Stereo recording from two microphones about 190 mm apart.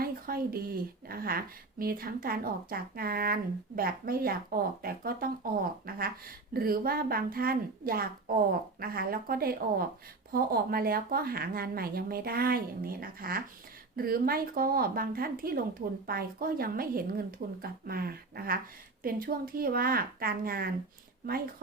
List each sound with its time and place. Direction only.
0.0 s a woman's voice: 50° right (ahead or behind)